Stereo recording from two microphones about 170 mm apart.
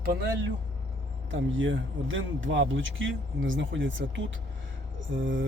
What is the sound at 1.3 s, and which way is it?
Speech, 90° right.